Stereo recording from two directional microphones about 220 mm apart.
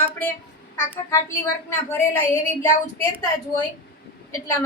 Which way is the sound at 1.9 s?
10° left (ahead or behind).